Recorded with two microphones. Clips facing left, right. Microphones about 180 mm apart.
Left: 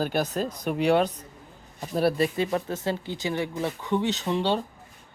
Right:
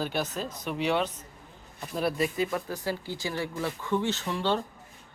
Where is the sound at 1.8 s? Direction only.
30° left (ahead or behind).